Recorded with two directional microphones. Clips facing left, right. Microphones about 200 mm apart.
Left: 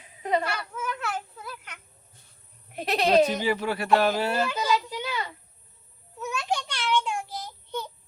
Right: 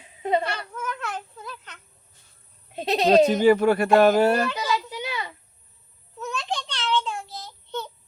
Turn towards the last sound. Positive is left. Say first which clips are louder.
# right 1 dB
turn(degrees=10)  # may be behind; listen again after turning